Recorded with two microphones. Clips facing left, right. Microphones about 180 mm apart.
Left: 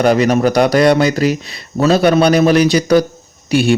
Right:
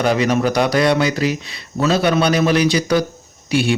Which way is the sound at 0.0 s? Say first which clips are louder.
Left 5 dB; 45° left (ahead or behind).